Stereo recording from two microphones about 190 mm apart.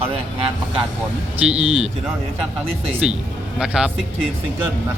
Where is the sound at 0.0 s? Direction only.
30° right (ahead or behind).